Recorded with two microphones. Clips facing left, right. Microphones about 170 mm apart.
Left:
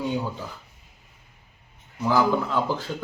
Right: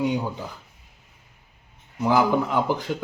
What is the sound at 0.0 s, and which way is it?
Speech, 15° right (ahead or behind).